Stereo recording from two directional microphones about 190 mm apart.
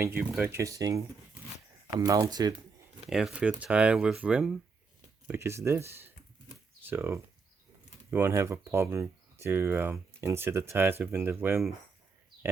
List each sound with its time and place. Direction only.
0.0 s speech: 10° right (ahead or behind)
0.5 s speech: 15° right (ahead or behind)
3.1 s speech: 5° right (ahead or behind)